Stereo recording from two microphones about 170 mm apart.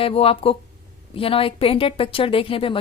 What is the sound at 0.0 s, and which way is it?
A woman's voice, 35° left (ahead or behind).